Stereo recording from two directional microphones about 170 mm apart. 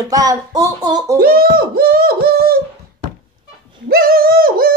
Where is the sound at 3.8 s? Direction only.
60° right (ahead or behind).